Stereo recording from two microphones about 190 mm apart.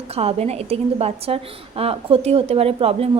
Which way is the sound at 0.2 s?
35° right (ahead or behind).